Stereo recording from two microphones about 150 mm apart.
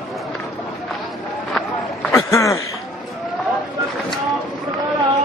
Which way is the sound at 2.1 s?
20° left (ahead or behind).